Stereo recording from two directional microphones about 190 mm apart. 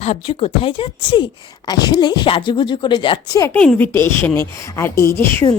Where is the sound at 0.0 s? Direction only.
30° left (ahead or behind).